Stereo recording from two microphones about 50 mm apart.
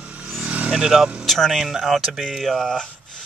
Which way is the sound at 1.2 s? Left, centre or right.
Centre.